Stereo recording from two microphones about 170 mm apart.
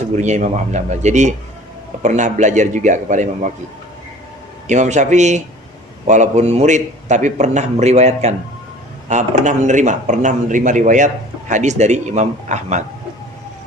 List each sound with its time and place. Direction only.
0.2 s a man's voice: 45° right (ahead or behind)
4.7 s a man's voice: 45° right (ahead or behind)